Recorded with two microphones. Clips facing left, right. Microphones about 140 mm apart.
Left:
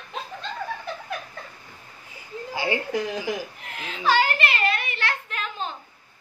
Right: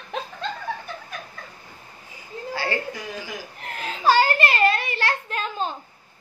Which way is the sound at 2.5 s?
15° left (ahead or behind).